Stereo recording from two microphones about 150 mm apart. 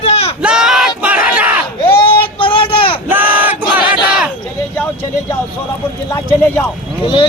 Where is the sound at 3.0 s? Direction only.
10° right (ahead or behind).